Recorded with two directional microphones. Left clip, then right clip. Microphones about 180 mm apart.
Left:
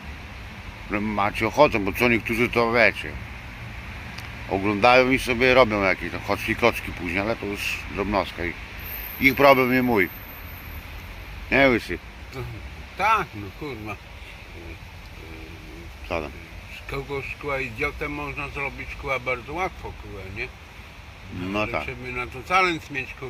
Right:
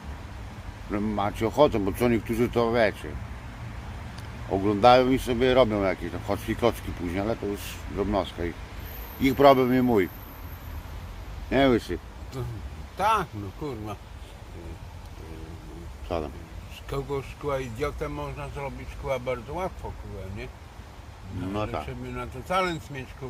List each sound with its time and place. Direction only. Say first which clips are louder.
0.9 s speech: left 4 dB; 5° left (ahead or behind)
4.6 s speech: left 1 dB; centre (ahead or behind)
11.4 s speech: left 4 dB; centre (ahead or behind)
13.0 s speech: left 3 dB; 60° right (ahead or behind)
16.0 s speech: left 2 dB; 10° right (ahead or behind)
16.9 s speech: left 1 dB; 60° right (ahead or behind)
18.0 s speech: left 4 dB; 30° right (ahead or behind)
18.5 s speech: left 6 dB; 15° right (ahead or behind)
21.5 s speech: left 5 dB; 35° left (ahead or behind)
22.1 s speech: left 5 dB; 10° right (ahead or behind)